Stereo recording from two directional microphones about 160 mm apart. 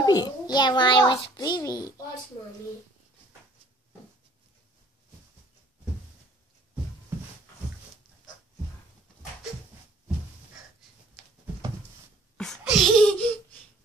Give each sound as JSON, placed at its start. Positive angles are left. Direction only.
{"t": 0.0, "sound": "a child's voice", "side_deg": 25}
{"t": 12.4, "sound": "laughter", "side_deg": 0}